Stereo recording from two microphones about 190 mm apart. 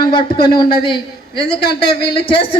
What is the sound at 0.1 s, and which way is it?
A man's voice, 25° left (ahead or behind).